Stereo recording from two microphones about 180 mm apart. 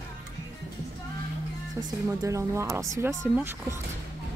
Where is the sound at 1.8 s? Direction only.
15° right (ahead or behind).